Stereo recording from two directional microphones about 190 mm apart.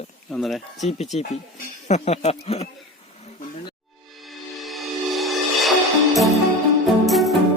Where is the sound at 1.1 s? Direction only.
35° left (ahead or behind).